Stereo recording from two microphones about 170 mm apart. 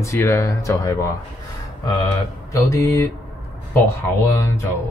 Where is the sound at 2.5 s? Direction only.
20° left (ahead or behind).